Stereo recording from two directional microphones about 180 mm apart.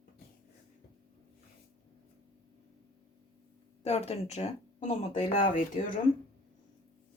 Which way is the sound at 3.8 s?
35° left (ahead or behind).